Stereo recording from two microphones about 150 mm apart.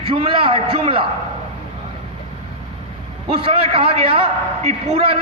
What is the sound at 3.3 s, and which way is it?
A man's voice, 40° right (ahead or behind).